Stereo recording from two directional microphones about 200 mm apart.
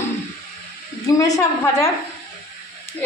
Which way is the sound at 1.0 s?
15° left (ahead or behind).